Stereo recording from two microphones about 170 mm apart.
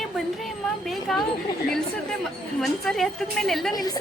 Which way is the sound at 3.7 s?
20° left (ahead or behind).